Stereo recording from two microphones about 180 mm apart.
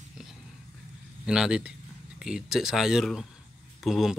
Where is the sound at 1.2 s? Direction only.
5° right (ahead or behind).